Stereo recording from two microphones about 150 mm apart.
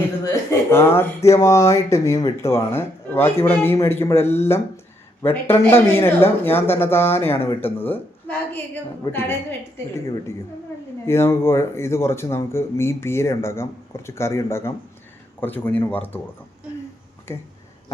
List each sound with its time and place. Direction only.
0.3 s speech: 15° left (ahead or behind)
11.0 s speech: 15° left (ahead or behind)
17.3 s speech: 15° left (ahead or behind)